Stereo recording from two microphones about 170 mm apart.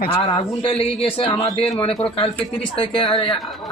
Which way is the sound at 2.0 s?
35° left (ahead or behind).